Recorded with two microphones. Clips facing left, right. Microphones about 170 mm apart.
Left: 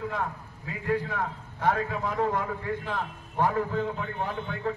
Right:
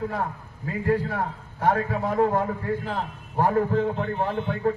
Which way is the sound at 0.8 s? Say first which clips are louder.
Right 4 dB; 45° right (ahead or behind).